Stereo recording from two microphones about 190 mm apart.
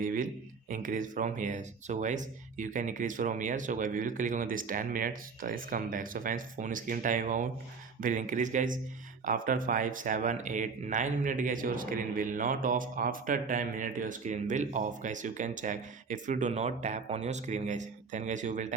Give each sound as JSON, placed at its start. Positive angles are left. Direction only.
{"t": 0.0, "sound": "speech", "side_deg": -45}